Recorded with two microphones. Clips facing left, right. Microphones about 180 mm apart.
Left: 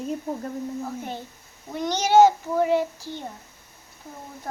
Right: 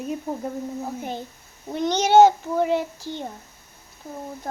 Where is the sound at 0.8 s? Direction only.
15° right (ahead or behind).